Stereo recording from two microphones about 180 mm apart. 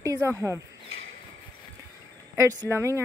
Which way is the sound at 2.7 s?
15° right (ahead or behind).